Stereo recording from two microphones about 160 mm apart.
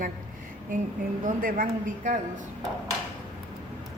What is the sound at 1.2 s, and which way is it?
Speech, 55° right (ahead or behind).